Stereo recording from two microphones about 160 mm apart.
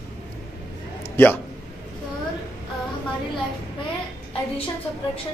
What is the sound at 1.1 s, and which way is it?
Speech, 10° left (ahead or behind).